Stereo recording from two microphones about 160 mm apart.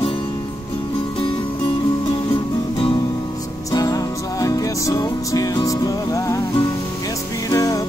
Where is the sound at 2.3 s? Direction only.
35° left (ahead or behind).